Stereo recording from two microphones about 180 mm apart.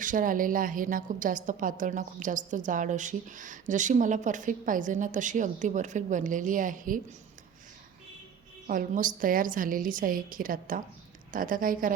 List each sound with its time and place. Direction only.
0.0 s a woman's voice: 45° right (ahead or behind)
8.6 s a woman's voice: 50° right (ahead or behind)